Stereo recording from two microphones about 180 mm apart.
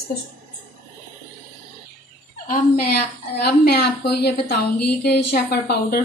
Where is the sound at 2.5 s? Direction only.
65° left (ahead or behind).